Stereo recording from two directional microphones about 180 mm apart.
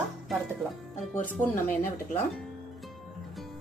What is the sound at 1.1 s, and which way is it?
Speech, 15° left (ahead or behind).